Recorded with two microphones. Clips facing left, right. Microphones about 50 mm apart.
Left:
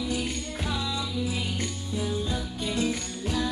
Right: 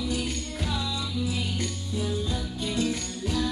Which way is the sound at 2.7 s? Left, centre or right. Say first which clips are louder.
Even; left.